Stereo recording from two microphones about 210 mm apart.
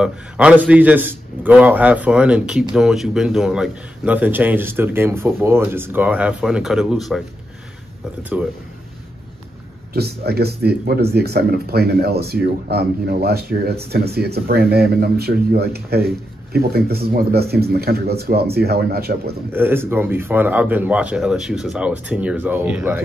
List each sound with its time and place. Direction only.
0.0 s a man's voice: 5° right (ahead or behind)
9.9 s speech: 50° right (ahead or behind)
19.5 s a man's voice: 10° right (ahead or behind)